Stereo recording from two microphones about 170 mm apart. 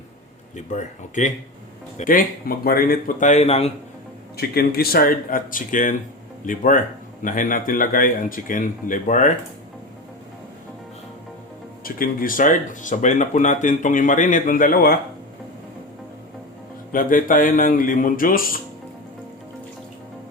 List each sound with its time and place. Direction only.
0.5 s speech: 45° left (ahead or behind)
4.4 s speech: 65° left (ahead or behind)
11.8 s speech: 55° left (ahead or behind)
16.9 s speech: 55° left (ahead or behind)